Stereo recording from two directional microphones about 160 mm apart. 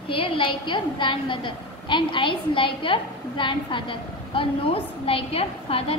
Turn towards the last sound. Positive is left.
turn(degrees=35)  # may be behind; listen again after turning